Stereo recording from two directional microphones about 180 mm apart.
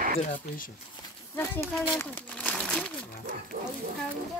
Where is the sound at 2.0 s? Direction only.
10° left (ahead or behind).